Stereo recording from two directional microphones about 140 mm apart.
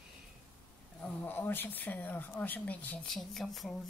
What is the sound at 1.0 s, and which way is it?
Speech, 15° left (ahead or behind).